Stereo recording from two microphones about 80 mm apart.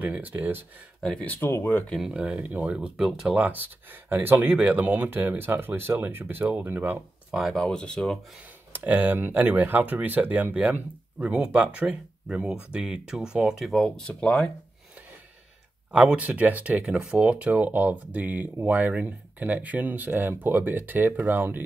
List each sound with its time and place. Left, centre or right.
0.0 s speech: right
1.2 s speech: left
2.0 s speech: centre
3.3 s speech: right
7.3 s speech: centre
7.6 s speech: centre
8.7 s speech: centre
15.9 s speech: centre